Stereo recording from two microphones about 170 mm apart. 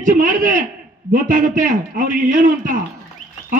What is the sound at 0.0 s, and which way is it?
A man's voice, 50° right (ahead or behind).